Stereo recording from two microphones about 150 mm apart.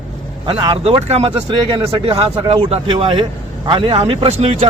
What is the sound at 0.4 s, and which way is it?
Speech, 30° right (ahead or behind).